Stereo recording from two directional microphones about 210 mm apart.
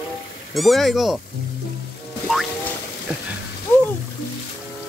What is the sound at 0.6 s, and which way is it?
Speech, centre (ahead or behind).